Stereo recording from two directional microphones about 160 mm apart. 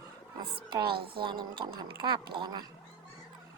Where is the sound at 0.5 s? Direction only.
35° right (ahead or behind).